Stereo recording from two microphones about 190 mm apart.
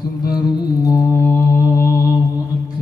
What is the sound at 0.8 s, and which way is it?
Mantra, 15° left (ahead or behind).